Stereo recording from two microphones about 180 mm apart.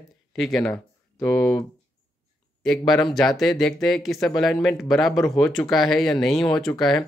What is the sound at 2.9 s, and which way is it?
Speech, centre (ahead or behind).